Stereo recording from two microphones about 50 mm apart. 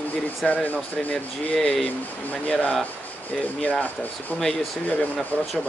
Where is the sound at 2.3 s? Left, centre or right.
Left.